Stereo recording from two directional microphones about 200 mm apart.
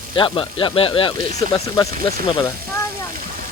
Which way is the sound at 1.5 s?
15° left (ahead or behind).